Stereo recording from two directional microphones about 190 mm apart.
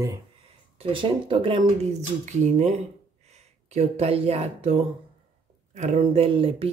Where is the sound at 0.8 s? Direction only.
30° right (ahead or behind).